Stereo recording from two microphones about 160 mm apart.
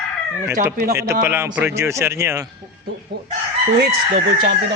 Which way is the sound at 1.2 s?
15° right (ahead or behind).